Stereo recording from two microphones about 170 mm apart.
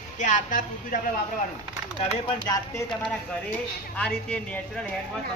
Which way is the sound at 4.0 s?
5° left (ahead or behind).